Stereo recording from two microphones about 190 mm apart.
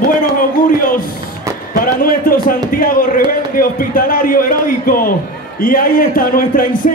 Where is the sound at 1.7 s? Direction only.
50° left (ahead or behind).